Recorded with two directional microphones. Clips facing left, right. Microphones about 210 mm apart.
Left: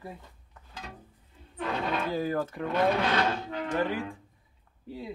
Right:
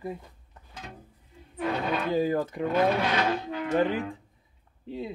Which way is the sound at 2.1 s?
15° right (ahead or behind).